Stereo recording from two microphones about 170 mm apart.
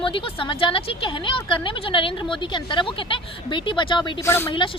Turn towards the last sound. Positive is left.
turn(degrees=15)  # may be behind; listen again after turning